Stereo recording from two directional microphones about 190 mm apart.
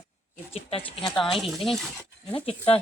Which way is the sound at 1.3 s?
Centre (ahead or behind).